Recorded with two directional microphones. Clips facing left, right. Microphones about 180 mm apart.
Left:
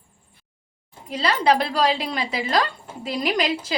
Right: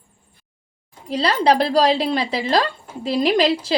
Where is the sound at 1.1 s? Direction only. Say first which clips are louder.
Right 3 dB; 35° right (ahead or behind).